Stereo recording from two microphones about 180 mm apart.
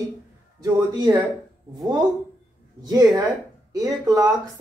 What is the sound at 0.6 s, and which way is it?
Speech, 20° right (ahead or behind).